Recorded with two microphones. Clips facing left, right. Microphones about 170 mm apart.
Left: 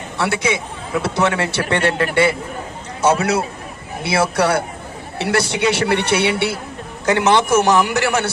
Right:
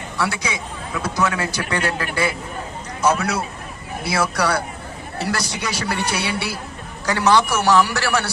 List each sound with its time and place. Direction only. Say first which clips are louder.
0.2 s a man's voice: left 5 dB; 25° left (ahead or behind)